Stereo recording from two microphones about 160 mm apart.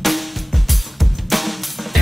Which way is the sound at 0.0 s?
Centre (ahead or behind).